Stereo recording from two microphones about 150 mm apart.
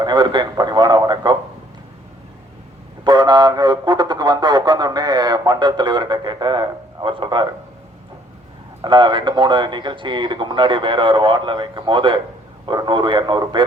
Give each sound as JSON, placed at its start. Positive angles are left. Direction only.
{"t": 0.0, "sound": "speech", "side_deg": -30}
{"t": 3.0, "sound": "speech", "side_deg": -30}
{"t": 8.8, "sound": "speech", "side_deg": -30}